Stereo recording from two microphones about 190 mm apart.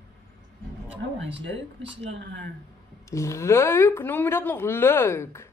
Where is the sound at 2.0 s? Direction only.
70° right (ahead or behind).